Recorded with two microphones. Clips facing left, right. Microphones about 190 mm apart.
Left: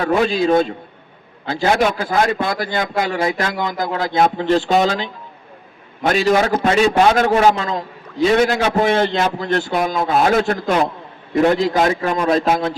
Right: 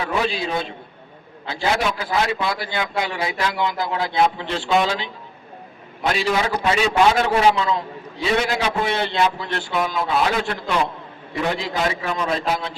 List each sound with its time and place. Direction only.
0.0 s a man's voice: 45° left (ahead or behind)